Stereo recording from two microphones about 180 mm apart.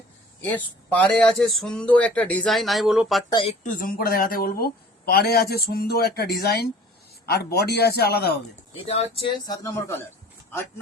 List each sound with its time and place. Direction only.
0.4 s speech: 10° left (ahead or behind)
3.6 s speech: 50° left (ahead or behind)
8.8 s speech: 35° left (ahead or behind)
9.5 s speech: 20° left (ahead or behind)